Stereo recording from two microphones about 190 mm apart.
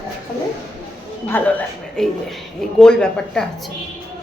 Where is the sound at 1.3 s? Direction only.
5° left (ahead or behind).